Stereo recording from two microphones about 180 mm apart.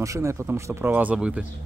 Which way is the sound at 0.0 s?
15° right (ahead or behind).